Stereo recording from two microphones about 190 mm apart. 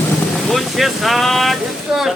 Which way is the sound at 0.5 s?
Centre (ahead or behind).